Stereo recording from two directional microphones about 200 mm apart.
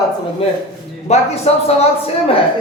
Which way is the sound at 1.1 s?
30° left (ahead or behind).